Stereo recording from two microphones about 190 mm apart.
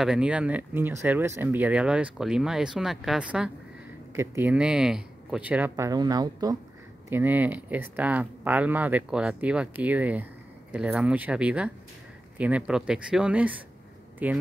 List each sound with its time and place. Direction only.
0.0 s speech: 5° right (ahead or behind)